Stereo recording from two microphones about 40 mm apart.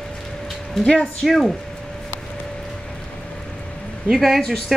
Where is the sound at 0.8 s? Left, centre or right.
Centre.